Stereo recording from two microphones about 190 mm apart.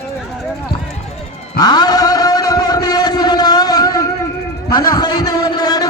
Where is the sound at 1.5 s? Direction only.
20° left (ahead or behind).